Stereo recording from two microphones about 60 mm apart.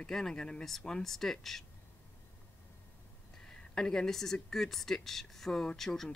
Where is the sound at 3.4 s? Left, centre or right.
Centre.